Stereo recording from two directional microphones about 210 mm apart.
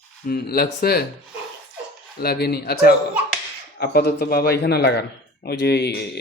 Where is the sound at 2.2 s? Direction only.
50° left (ahead or behind).